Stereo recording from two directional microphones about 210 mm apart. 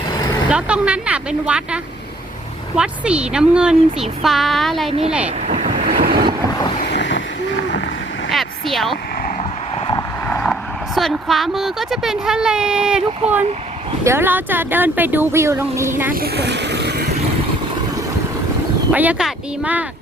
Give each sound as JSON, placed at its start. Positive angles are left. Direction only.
{"t": 0.5, "sound": "speech", "side_deg": -5}
{"t": 4.9, "sound": "speech", "side_deg": -30}
{"t": 5.5, "sound": "waves", "side_deg": -30}
{"t": 5.9, "sound": "boat", "side_deg": -45}
{"t": 6.8, "sound": "a sound", "side_deg": 55}
{"t": 8.3, "sound": "a sound", "side_deg": 0}
{"t": 9.2, "sound": "vehicle", "side_deg": 30}
{"t": 10.2, "sound": "speech", "side_deg": 5}
{"t": 16.1, "sound": "vehicle", "side_deg": -50}
{"t": 18.9, "sound": "speech", "side_deg": -5}